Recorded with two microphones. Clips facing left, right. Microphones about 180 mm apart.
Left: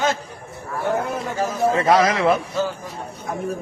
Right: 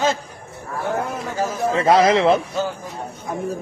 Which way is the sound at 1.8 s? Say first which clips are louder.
Right 5 dB; 30° right (ahead or behind).